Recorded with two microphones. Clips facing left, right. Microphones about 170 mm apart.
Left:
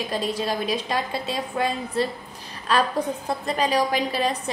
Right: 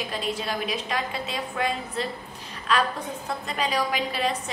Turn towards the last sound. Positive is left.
turn(degrees=40)  # may be behind; listen again after turning